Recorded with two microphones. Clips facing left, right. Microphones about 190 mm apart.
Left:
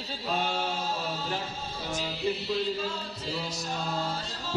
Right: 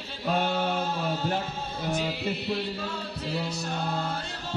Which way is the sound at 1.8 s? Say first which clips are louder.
Right 2 dB; 60° right (ahead or behind).